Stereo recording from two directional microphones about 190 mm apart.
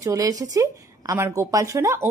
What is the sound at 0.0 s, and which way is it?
A woman's voice, 15° right (ahead or behind).